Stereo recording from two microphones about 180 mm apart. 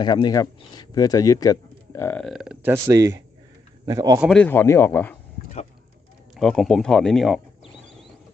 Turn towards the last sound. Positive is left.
turn(degrees=0)  # may be behind; listen again after turning